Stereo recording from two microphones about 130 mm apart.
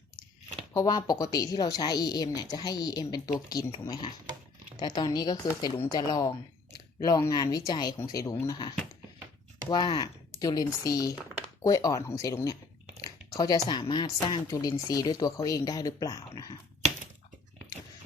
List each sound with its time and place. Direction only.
0.7 s speech: 30° left (ahead or behind)